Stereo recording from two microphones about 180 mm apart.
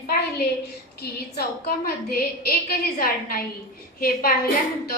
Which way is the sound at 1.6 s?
55° left (ahead or behind).